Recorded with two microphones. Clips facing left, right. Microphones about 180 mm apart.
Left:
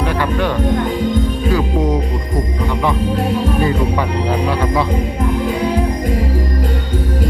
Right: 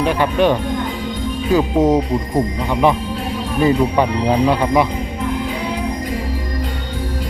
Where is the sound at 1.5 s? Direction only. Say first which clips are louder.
Right 5 dB; 25° right (ahead or behind).